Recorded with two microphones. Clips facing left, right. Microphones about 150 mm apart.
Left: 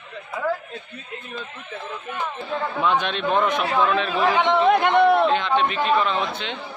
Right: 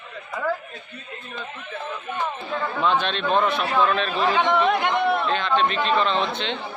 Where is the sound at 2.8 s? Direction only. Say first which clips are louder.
Even; 15° left (ahead or behind).